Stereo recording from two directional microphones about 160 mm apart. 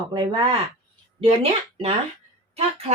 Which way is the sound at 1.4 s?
35° right (ahead or behind).